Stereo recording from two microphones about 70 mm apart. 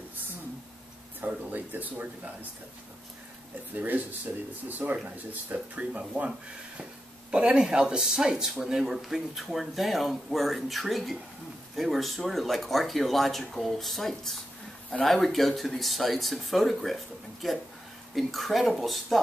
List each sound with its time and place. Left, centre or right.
1.2 s speech: right
3.7 s speech: right; by 19.1 s centre